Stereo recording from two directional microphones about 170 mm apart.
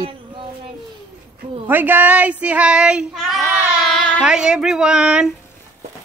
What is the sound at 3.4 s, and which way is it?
Child singing, 15° right (ahead or behind).